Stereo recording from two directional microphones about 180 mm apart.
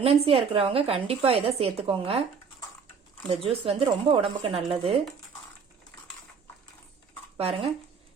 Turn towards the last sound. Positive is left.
turn(degrees=-35)  # may be behind; listen again after turning